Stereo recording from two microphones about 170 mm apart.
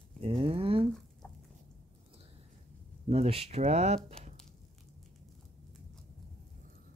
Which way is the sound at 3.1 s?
35° right (ahead or behind).